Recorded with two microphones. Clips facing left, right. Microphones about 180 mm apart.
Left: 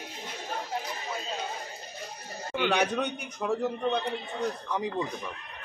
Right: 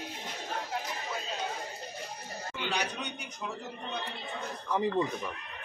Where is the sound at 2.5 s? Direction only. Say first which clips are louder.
Left 9 dB; 70° left (ahead or behind).